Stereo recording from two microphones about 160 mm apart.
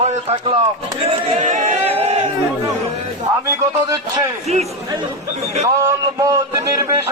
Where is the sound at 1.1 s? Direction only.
45° right (ahead or behind).